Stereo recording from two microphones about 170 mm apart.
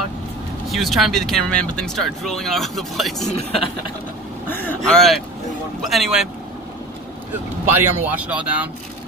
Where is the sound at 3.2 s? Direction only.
35° left (ahead or behind).